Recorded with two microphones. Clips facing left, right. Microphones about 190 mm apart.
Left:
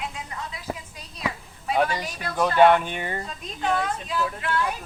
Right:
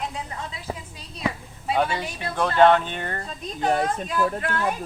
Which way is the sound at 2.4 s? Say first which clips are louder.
Even; 10° left (ahead or behind).